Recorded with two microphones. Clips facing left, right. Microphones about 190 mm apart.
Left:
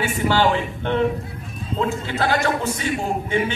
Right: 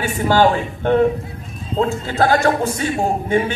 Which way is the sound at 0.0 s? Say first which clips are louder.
Right 4 dB; 45° right (ahead or behind).